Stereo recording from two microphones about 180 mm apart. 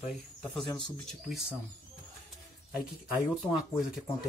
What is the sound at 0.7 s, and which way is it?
Speech, 25° left (ahead or behind).